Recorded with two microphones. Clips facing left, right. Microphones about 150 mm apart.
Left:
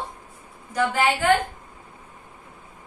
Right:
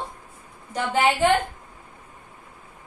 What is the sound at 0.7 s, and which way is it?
Speech, 25° right (ahead or behind).